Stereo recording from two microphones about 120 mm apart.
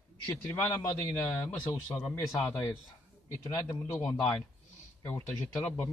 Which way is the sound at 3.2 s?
25° left (ahead or behind).